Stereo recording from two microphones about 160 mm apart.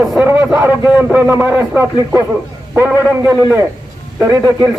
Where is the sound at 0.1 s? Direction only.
10° right (ahead or behind).